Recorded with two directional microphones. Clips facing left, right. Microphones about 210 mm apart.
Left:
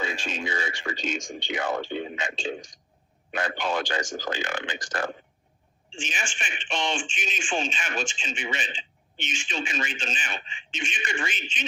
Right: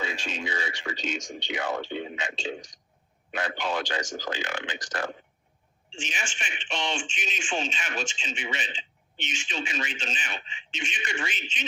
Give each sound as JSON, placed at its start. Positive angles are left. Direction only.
{"t": 0.0, "sound": "speech", "side_deg": 50}